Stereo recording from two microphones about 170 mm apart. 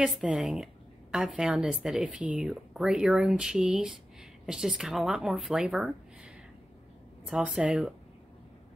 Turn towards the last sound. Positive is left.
turn(degrees=-5)  # may be behind; listen again after turning